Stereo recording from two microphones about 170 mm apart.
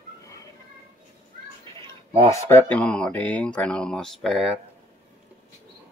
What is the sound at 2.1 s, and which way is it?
Speech, 35° right (ahead or behind).